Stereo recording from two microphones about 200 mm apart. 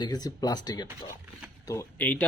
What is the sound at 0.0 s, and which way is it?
Speech, 20° left (ahead or behind).